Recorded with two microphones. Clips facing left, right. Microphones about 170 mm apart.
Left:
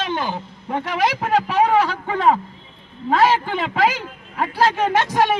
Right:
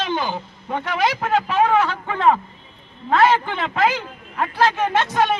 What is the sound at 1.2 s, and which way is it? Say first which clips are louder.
A man's voice: left 2 dB; 10° left (ahead or behind).